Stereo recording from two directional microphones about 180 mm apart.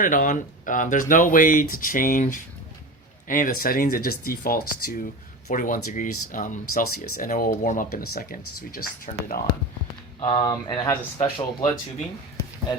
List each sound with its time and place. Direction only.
0.0 s speech: 45° left (ahead or behind)
10.2 s speech: 25° left (ahead or behind)
11.2 s speech: 35° left (ahead or behind)